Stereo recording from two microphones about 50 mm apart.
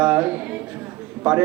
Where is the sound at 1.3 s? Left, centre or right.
Centre.